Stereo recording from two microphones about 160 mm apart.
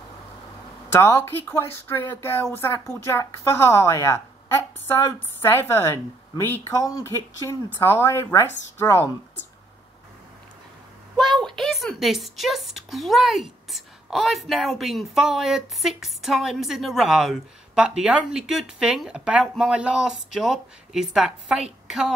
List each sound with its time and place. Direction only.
1.0 s speech: 15° left (ahead or behind)
11.1 s speech: centre (ahead or behind)